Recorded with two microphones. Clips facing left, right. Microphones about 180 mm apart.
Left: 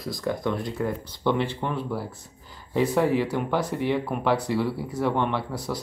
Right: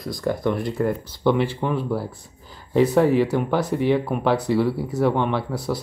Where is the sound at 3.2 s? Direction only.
10° right (ahead or behind).